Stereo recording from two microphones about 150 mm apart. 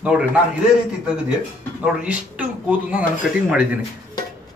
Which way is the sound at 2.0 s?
10° right (ahead or behind).